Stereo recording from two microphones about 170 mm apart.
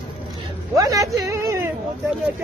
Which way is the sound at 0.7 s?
20° right (ahead or behind).